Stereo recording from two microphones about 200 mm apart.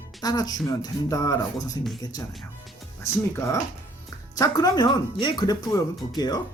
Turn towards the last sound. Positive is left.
turn(degrees=20)  # may be behind; listen again after turning